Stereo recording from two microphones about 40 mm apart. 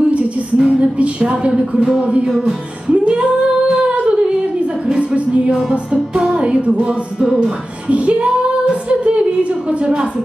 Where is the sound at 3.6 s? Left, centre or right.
Right.